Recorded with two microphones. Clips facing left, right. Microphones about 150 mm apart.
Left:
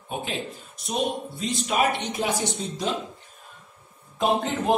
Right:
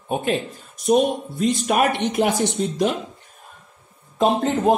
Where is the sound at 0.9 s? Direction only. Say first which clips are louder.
Right 9 dB; 55° right (ahead or behind).